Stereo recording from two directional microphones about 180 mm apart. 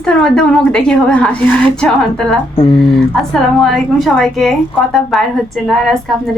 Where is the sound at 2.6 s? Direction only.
30° left (ahead or behind).